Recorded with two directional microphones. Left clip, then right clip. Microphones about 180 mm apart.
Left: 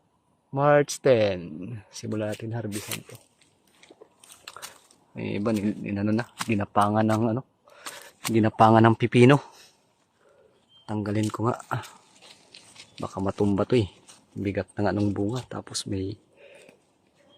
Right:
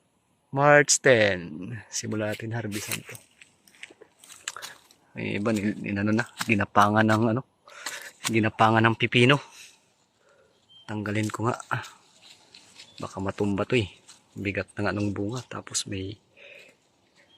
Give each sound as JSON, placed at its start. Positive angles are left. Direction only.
{"t": 0.5, "sound": "speech", "side_deg": -5}
{"t": 2.9, "sound": "a sound", "side_deg": 10}
{"t": 5.1, "sound": "speech", "side_deg": 5}
{"t": 6.3, "sound": "speech", "side_deg": -10}
{"t": 8.3, "sound": "speech", "side_deg": 15}
{"t": 10.8, "sound": "speech", "side_deg": 20}
{"t": 13.6, "sound": "speech", "side_deg": 25}